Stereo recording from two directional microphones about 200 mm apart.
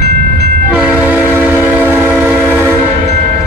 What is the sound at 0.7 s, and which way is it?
Train, 5° right (ahead or behind).